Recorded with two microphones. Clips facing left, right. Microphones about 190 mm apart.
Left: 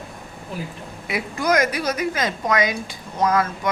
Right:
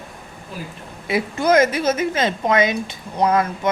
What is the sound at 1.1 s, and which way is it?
A woman's voice, 25° right (ahead or behind).